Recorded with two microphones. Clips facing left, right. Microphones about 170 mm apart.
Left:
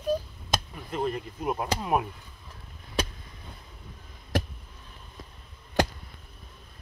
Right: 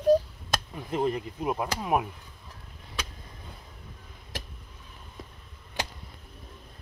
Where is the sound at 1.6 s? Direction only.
5° right (ahead or behind).